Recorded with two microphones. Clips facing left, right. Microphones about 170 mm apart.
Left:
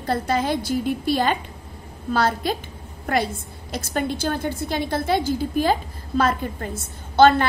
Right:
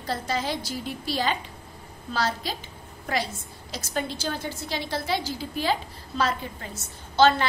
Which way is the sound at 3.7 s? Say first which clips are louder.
Left 5 dB; 55° left (ahead or behind).